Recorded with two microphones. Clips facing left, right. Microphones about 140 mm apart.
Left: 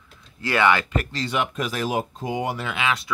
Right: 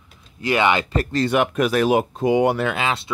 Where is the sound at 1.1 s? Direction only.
55° right (ahead or behind).